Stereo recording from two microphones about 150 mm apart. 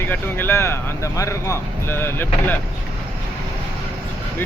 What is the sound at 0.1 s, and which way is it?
Speech, 15° left (ahead or behind).